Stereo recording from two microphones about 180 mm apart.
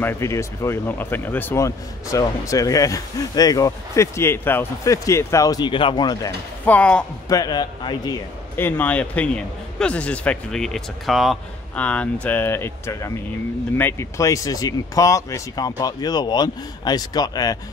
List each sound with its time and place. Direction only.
0.0 s speech: 15° left (ahead or behind)
6.6 s speech: 10° left (ahead or behind)
7.2 s speech: 20° left (ahead or behind)
8.5 s speech: 10° left (ahead or behind)